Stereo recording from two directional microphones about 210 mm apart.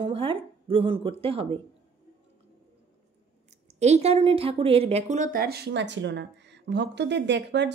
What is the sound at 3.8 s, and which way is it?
Speech, 30° right (ahead or behind).